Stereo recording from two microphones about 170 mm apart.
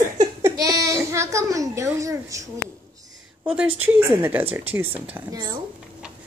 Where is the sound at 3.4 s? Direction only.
5° right (ahead or behind).